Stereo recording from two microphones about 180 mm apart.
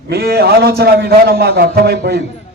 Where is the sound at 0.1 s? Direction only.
60° right (ahead or behind).